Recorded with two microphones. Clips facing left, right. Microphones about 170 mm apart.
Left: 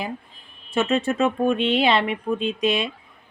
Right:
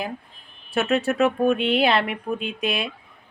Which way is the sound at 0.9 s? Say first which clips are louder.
Right 2 dB; 65° right (ahead or behind).